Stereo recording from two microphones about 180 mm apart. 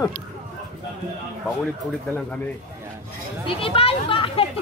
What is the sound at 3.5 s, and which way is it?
Speech, 30° left (ahead or behind).